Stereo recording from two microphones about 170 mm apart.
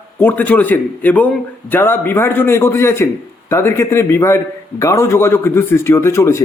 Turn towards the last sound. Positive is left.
turn(degrees=15)  # may be behind; listen again after turning